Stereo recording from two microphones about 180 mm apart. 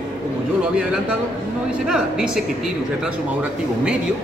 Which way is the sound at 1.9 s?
5° right (ahead or behind).